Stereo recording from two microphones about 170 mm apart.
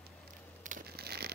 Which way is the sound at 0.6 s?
60° right (ahead or behind).